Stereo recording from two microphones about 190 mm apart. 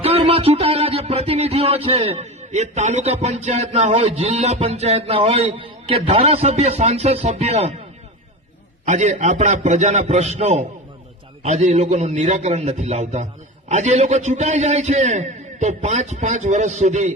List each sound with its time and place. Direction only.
0.0 s music: 30° right (ahead or behind)
8.9 s music: 35° right (ahead or behind)